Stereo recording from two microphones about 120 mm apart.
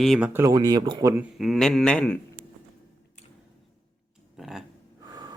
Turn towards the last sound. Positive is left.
turn(degrees=-30)  # may be behind; listen again after turning